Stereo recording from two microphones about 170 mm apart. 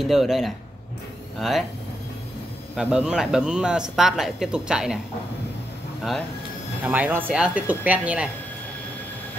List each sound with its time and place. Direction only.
0.0 s speech: centre (ahead or behind)
2.7 s speech: 5° right (ahead or behind)
6.8 s speech: 10° right (ahead or behind)